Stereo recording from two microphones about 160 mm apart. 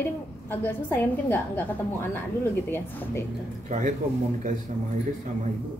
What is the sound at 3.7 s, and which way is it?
Speech, 50° right (ahead or behind).